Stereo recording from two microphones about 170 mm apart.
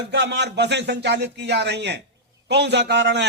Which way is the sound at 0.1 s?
90° right.